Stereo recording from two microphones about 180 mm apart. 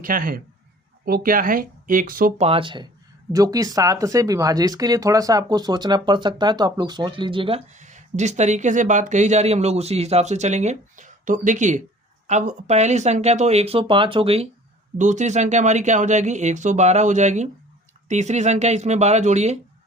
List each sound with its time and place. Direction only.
0.0 s speech: 50° right (ahead or behind)
2.4 s speech: 30° right (ahead or behind)
14.9 s speech: 40° right (ahead or behind)